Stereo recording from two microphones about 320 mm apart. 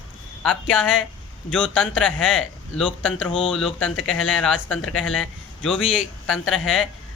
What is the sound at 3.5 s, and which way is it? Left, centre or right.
Speech, centre.